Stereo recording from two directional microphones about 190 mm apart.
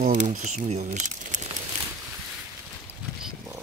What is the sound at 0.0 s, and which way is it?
Speech, 40° right (ahead or behind).